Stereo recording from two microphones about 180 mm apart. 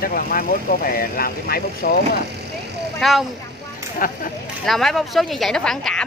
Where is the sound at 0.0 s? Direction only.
55° left (ahead or behind).